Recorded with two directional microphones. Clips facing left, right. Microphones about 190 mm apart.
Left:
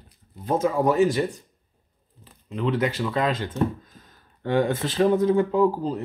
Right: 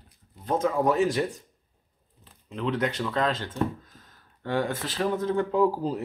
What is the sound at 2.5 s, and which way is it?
Speech, 5° left (ahead or behind).